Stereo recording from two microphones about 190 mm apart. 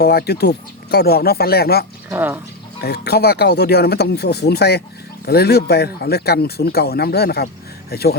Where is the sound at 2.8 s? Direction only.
60° left (ahead or behind).